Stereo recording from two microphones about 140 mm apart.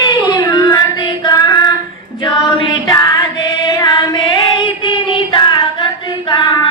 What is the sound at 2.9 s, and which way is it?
Music, 30° left (ahead or behind).